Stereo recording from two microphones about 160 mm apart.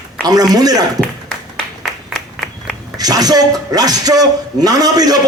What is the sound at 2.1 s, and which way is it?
Applause, centre (ahead or behind).